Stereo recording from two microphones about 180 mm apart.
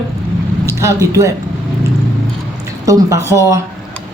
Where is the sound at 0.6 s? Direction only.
15° right (ahead or behind).